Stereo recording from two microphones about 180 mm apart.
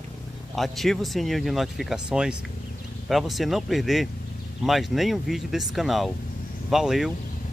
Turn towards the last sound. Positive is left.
turn(degrees=0)  # may be behind; listen again after turning